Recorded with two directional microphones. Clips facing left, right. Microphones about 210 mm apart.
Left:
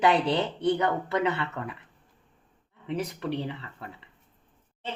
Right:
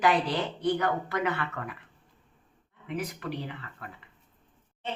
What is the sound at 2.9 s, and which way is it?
Speech, 30° left (ahead or behind).